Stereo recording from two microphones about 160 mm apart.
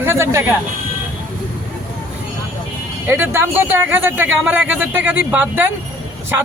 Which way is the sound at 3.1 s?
15° right (ahead or behind).